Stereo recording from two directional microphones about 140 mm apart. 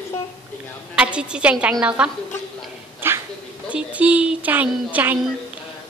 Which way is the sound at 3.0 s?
15° right (ahead or behind).